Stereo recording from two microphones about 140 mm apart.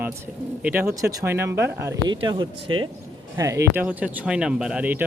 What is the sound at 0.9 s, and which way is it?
Speech, 25° right (ahead or behind).